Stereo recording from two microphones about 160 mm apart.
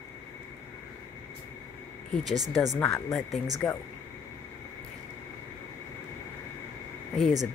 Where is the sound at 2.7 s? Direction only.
15° left (ahead or behind).